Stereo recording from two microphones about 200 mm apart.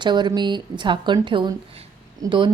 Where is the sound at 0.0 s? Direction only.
20° right (ahead or behind).